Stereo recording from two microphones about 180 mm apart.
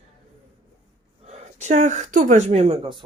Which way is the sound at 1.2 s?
40° right (ahead or behind).